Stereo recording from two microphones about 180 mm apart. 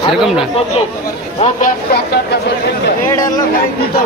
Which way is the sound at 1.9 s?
70° left (ahead or behind).